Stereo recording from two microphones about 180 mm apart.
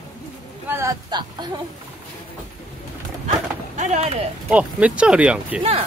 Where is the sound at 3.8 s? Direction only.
40° right (ahead or behind).